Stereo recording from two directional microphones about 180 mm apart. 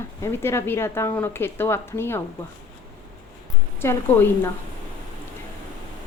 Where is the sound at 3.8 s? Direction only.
10° left (ahead or behind).